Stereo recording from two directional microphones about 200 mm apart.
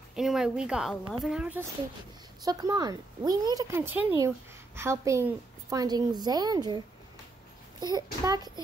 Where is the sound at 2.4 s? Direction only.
20° right (ahead or behind).